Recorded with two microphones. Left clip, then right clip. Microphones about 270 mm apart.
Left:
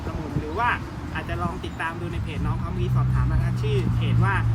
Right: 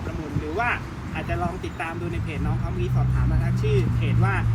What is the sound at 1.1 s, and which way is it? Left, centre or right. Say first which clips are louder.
Speech: right 2 dB; centre.